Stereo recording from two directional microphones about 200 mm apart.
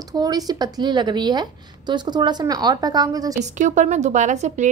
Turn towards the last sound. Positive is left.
turn(degrees=-35)  # may be behind; listen again after turning